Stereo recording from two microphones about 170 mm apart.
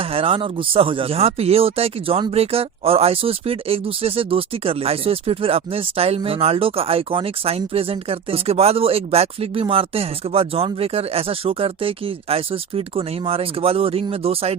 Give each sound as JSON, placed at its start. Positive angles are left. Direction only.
{"t": 0.0, "sound": "speech", "side_deg": -35}